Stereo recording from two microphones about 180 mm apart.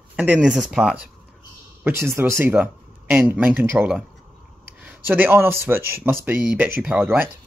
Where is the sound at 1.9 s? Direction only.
15° right (ahead or behind).